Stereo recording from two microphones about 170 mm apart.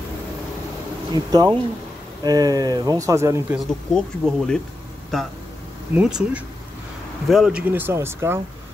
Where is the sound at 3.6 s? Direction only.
Centre (ahead or behind).